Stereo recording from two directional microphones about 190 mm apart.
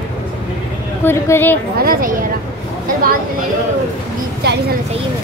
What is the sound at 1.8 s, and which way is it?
Speech, 50° right (ahead or behind).